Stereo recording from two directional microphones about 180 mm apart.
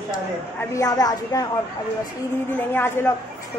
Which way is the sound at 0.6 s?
20° left (ahead or behind).